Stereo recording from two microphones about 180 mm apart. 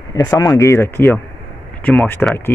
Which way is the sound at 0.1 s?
20° left (ahead or behind).